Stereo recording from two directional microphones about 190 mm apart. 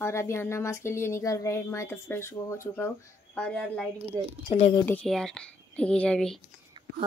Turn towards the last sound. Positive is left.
turn(degrees=5)  # may be behind; listen again after turning